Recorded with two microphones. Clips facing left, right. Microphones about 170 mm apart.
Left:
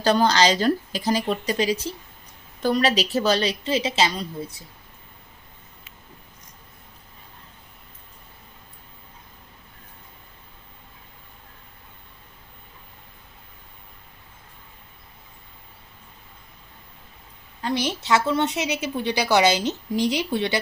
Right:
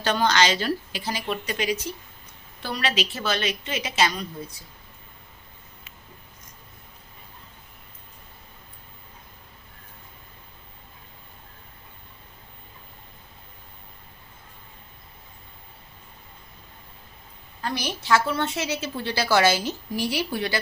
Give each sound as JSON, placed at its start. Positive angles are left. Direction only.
{"t": 0.0, "sound": "speech", "side_deg": 35}
{"t": 2.6, "sound": "speech", "side_deg": 45}
{"t": 17.6, "sound": "a woman's voice", "side_deg": 25}